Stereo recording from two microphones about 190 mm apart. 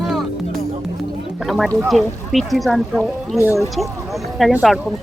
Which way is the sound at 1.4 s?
Centre (ahead or behind).